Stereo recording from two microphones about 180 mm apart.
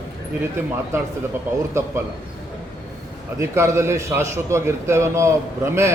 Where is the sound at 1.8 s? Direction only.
15° right (ahead or behind).